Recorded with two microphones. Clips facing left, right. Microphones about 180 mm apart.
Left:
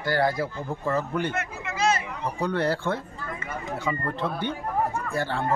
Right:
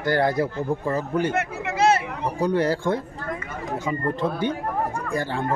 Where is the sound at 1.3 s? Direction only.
65° right (ahead or behind).